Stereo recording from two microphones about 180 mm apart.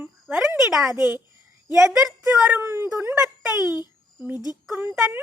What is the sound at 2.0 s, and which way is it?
Speech, 5° right (ahead or behind).